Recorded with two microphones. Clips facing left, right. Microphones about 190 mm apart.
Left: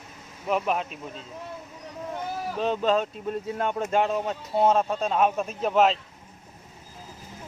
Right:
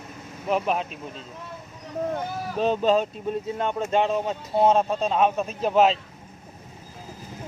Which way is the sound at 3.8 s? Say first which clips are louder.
Right 2 dB; 25° right (ahead or behind).